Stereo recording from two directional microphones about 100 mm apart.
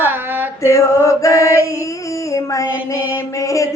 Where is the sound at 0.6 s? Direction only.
30° left (ahead or behind).